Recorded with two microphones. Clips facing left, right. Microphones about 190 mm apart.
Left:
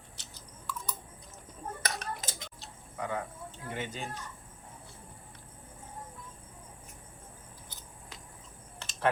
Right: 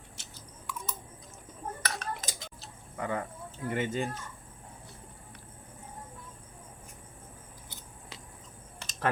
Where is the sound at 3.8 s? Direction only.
55° right (ahead or behind).